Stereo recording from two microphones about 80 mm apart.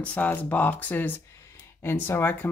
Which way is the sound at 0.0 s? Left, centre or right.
Centre.